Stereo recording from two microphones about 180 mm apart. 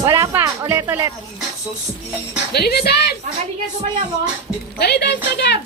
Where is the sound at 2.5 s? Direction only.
60° left (ahead or behind).